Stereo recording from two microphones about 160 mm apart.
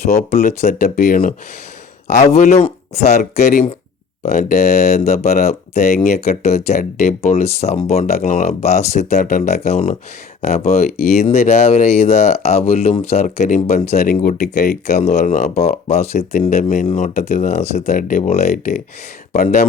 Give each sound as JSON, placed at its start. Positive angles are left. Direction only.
{"t": 0.0, "sound": "speech", "side_deg": 45}
{"t": 2.0, "sound": "speech", "side_deg": 45}
{"t": 3.3, "sound": "speech", "side_deg": 50}
{"t": 6.4, "sound": "speech", "side_deg": 40}
{"t": 7.4, "sound": "speech", "side_deg": 40}
{"t": 17.8, "sound": "speech", "side_deg": 55}
{"t": 18.2, "sound": "speech", "side_deg": 45}